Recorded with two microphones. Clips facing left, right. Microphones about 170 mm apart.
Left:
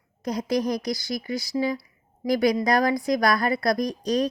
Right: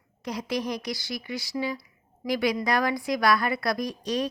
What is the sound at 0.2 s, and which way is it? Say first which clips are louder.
Speech: left 5 dB; 40° left (ahead or behind).